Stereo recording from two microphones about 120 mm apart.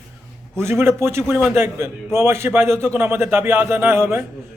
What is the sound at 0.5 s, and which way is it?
A man's voice, 20° right (ahead or behind).